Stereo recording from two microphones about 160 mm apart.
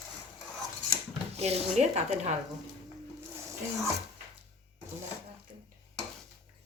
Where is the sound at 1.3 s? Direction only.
40° right (ahead or behind).